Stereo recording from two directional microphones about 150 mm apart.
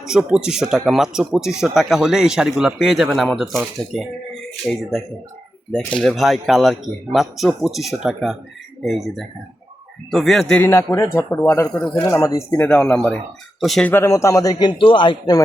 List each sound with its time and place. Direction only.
0.0 s speech: 5° right (ahead or behind)
10.6 s speech: 15° left (ahead or behind)
12.6 s speech: 5° left (ahead or behind)
13.9 s a man's voice: 20° left (ahead or behind)